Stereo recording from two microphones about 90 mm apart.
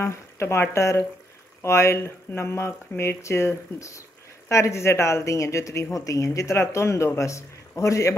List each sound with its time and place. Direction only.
0.0 s speech: 30° left (ahead or behind)